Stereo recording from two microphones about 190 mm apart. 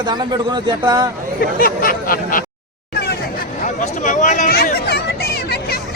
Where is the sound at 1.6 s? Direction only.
50° left (ahead or behind).